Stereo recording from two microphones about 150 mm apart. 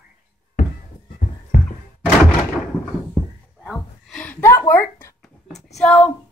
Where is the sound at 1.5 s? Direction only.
55° left (ahead or behind).